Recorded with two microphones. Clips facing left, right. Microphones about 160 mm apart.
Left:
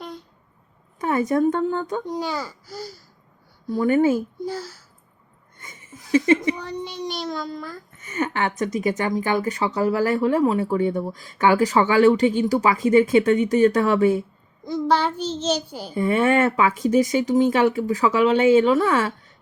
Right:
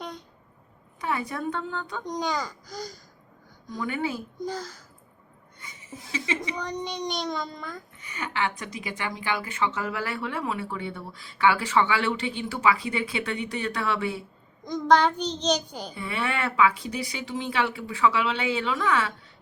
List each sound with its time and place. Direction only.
0.9 s speech: 45° left (ahead or behind)
2.0 s speech: 5° left (ahead or behind)
3.8 s speech: 45° left (ahead or behind)
4.4 s speech: 10° left (ahead or behind)
5.5 s speech: 50° left (ahead or behind)
6.6 s a child's voice: 5° left (ahead or behind)
7.9 s speech: 45° left (ahead or behind)
14.6 s a child's voice: 5° left (ahead or behind)
16.0 s speech: 45° left (ahead or behind)